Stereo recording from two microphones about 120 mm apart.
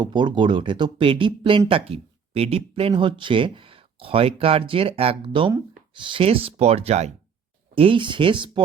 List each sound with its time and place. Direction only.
0.0 s speech: 40° right (ahead or behind); by 7.1 s 60° right (ahead or behind)
7.8 s speech: 45° right (ahead or behind)